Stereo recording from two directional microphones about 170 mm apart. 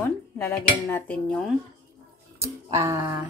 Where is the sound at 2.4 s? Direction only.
15° right (ahead or behind).